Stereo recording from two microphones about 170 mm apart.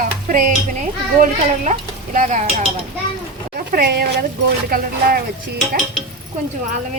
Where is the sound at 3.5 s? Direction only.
60° right (ahead or behind).